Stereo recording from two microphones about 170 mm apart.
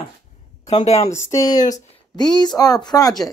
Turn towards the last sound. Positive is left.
turn(degrees=20)  # may be behind; listen again after turning